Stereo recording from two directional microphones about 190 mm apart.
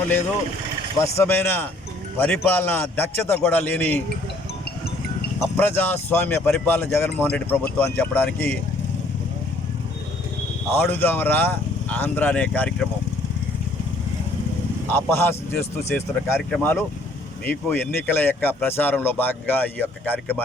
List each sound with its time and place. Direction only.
1.2 s speech: 10° left (ahead or behind)
5.4 s speech: 10° left (ahead or behind)
10.8 s speech: 10° left (ahead or behind)
14.8 s speech: 10° left (ahead or behind)